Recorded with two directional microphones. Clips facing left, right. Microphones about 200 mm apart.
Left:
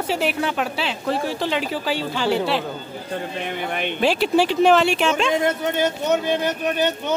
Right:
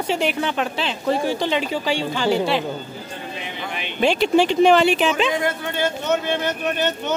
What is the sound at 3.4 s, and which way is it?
Speech, 55° left (ahead or behind).